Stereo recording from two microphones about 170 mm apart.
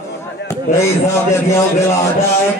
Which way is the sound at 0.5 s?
15° left (ahead or behind).